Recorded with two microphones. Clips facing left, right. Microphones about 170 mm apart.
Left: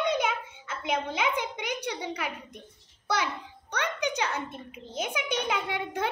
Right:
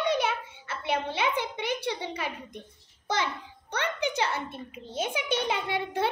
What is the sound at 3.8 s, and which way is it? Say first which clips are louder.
A child's voice: right 1 dB; 15° left (ahead or behind).